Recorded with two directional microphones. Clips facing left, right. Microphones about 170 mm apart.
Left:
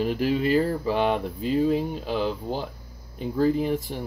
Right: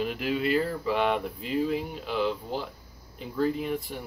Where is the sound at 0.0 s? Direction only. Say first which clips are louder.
Left 5 dB; 35° left (ahead or behind).